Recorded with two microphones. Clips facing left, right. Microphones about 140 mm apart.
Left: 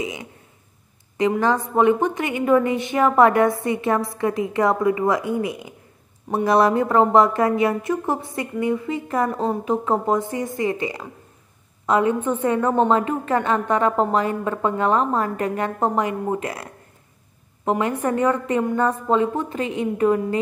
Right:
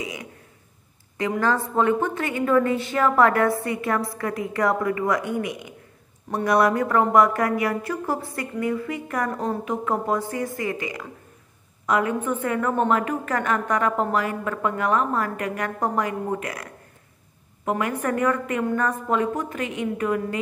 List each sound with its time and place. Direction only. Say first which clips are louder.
0.0 s a sound: left 4 dB; 25° left (ahead or behind)
1.4 s a woman's voice: left 2 dB; 20° left (ahead or behind)
17.6 s a woman's voice: left 3 dB; 25° left (ahead or behind)